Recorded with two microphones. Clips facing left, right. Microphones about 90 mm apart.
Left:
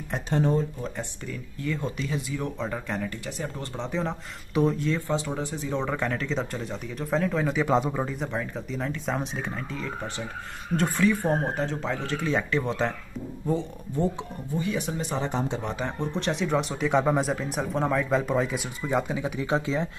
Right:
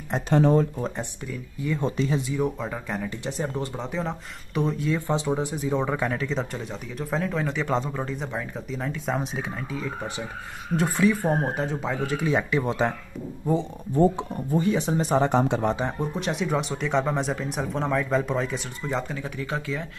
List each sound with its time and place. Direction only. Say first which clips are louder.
0.3 s speech: right 5 dB; 90° right
1.2 s speech: right 2 dB; 5° right (ahead or behind)
1.7 s speech: right 5 dB; 30° right (ahead or behind)
2.3 s speech: right 3 dB; 10° right (ahead or behind)
3.3 s speech: right 5 dB; 30° right (ahead or behind)
3.6 s speech: even; 5° right (ahead or behind)
4.9 s speech: right 3 dB; 20° right (ahead or behind)
13.9 s speech: right 7 dB; 45° right (ahead or behind)
15.2 s speech: right 6 dB; 65° right (ahead or behind)
15.7 s speech: right 2 dB; 15° right (ahead or behind); by 19.9 s 20° left (ahead or behind)